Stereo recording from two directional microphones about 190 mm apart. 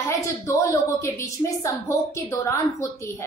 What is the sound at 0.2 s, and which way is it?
A woman's voice, 15° left (ahead or behind).